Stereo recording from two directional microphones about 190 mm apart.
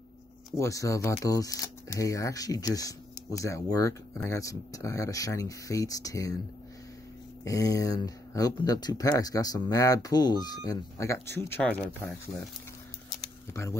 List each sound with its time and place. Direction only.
0.6 s speech: 15° left (ahead or behind)
7.4 s speech: 15° left (ahead or behind)
13.2 s a sound: 15° left (ahead or behind)